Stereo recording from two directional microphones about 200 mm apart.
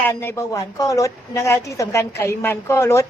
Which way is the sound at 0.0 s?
10° left (ahead or behind).